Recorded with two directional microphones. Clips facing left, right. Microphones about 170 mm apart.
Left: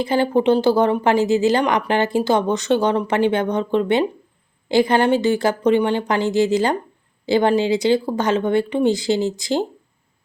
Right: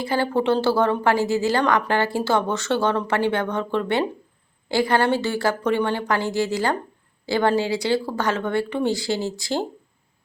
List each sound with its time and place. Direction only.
0.0 s a woman's voice: 20° left (ahead or behind)